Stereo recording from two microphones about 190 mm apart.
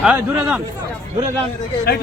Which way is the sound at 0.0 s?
5° right (ahead or behind).